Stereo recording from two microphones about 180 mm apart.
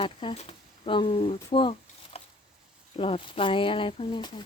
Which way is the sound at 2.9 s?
30° left (ahead or behind).